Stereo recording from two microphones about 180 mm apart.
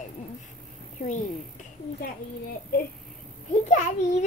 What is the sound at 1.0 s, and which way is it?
Speech, 45° left (ahead or behind).